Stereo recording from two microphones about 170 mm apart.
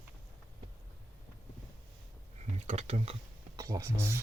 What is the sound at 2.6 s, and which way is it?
Speech, 35° right (ahead or behind).